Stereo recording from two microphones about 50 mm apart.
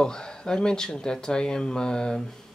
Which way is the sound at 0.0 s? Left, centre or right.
Centre.